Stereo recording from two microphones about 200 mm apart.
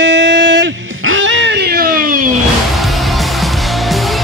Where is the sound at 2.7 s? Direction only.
Centre (ahead or behind).